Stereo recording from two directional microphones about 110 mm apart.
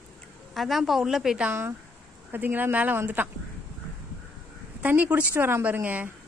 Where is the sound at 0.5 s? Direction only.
Centre (ahead or behind); by 3.3 s 20° right (ahead or behind).